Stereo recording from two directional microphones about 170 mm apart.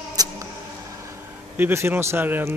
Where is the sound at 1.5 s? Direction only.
15° right (ahead or behind).